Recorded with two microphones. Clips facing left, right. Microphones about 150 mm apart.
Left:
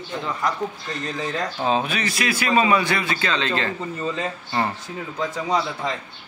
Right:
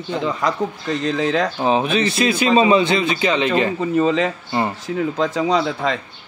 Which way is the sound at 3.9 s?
90° right.